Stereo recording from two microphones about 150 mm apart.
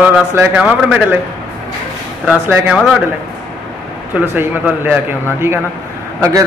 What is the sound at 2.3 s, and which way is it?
Speech, 10° right (ahead or behind).